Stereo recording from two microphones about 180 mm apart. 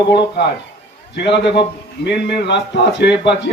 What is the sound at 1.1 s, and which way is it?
A man's voice, 75° left (ahead or behind).